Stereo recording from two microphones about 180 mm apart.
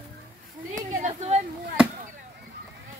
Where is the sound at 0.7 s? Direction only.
40° right (ahead or behind).